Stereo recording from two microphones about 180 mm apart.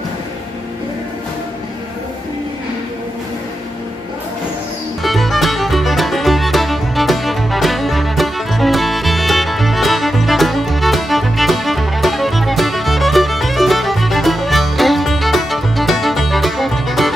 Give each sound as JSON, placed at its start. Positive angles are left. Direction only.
{"t": 5.0, "sound": "music", "side_deg": 0}